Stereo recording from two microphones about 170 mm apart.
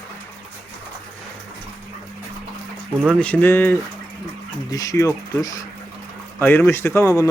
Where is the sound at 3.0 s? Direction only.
5° left (ahead or behind).